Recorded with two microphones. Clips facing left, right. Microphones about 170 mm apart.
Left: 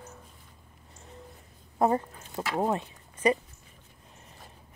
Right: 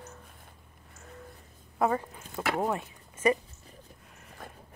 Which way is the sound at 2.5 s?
20° left (ahead or behind).